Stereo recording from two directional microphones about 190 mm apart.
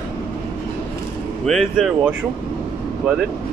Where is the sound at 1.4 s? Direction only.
Centre (ahead or behind).